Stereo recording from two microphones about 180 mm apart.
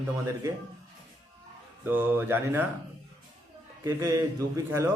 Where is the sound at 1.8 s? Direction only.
10° right (ahead or behind).